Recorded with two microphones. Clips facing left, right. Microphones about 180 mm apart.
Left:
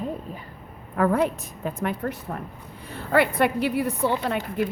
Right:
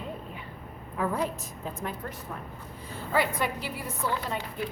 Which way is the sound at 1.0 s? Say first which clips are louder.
Left 8 dB; 65° left (ahead or behind).